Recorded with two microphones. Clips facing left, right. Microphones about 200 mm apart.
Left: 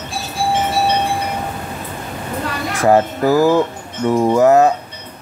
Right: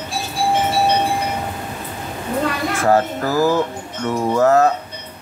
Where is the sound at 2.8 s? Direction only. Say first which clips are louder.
Left 4 dB; 15° left (ahead or behind).